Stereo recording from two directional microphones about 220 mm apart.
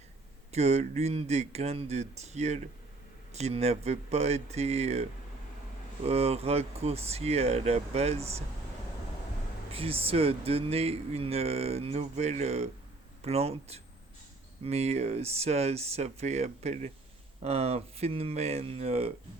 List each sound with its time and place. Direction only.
0.5 s speech: 30° right (ahead or behind)
6.1 s speech: 25° right (ahead or behind)
9.7 s speech: 25° right (ahead or behind)